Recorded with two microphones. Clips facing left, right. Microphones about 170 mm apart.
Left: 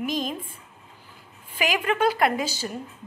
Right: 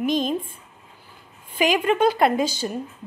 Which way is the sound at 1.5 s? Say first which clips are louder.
Right 5 dB; 25° right (ahead or behind).